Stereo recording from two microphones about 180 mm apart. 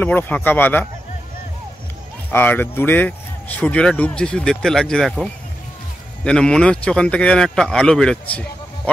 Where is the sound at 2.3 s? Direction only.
10° left (ahead or behind).